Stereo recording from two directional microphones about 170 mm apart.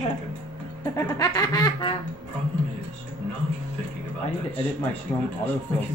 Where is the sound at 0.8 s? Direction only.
20° left (ahead or behind).